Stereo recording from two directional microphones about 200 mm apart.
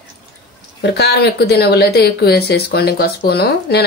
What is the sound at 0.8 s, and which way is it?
Speech, 55° left (ahead or behind).